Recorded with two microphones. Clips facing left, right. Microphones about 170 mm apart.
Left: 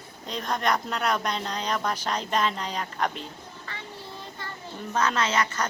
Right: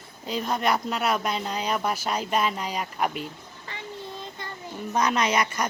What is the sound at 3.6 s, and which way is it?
Child singing, 20° right (ahead or behind).